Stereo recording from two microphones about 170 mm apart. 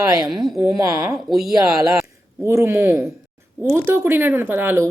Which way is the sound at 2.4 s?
15° right (ahead or behind).